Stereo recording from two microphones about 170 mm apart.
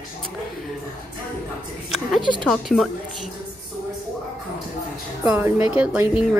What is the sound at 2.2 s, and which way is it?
Speech, 25° right (ahead or behind).